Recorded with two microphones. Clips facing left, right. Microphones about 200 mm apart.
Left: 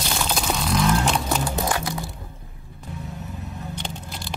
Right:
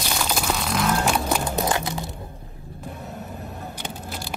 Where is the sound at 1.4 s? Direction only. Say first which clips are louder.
Right 1 dB; 20° right (ahead or behind).